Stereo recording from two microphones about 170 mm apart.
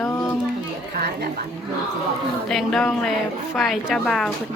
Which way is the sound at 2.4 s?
5° left (ahead or behind).